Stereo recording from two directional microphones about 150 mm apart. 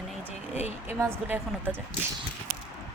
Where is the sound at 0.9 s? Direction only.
15° right (ahead or behind).